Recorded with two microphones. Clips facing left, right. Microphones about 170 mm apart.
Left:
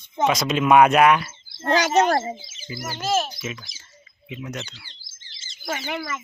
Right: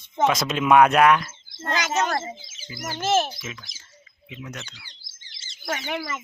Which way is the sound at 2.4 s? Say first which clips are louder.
Left 5 dB; centre (ahead or behind).